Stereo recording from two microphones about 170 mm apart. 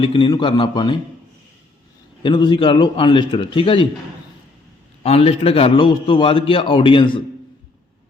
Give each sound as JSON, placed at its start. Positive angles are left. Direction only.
{"t": 0.0, "sound": "a man's voice", "side_deg": 30}
{"t": 2.2, "sound": "a man's voice", "side_deg": 30}
{"t": 5.0, "sound": "a man's voice", "side_deg": 35}